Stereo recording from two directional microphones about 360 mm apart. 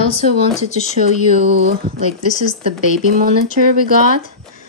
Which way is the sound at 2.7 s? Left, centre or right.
Right.